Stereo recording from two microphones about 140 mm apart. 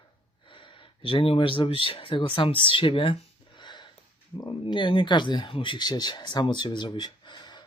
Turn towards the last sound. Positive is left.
turn(degrees=35)  # may be behind; listen again after turning